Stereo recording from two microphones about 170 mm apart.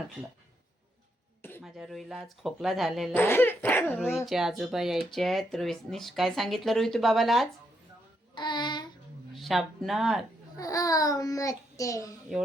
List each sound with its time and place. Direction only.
1.4 s throat clearing: 15° left (ahead or behind)
1.6 s speech: centre (ahead or behind)
3.2 s speech: 10° left (ahead or behind)
3.9 s speech: centre (ahead or behind)
8.4 s a sound: 25° left (ahead or behind)
9.3 s speech: centre (ahead or behind)
10.6 s a child's voice: 20° left (ahead or behind)